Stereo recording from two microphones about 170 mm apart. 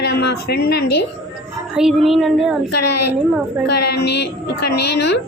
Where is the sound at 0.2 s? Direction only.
75° left (ahead or behind).